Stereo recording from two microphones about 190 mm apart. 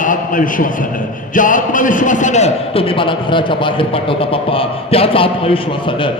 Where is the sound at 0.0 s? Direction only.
45° left (ahead or behind).